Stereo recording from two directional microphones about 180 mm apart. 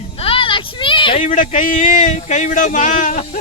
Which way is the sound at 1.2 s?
45° left (ahead or behind).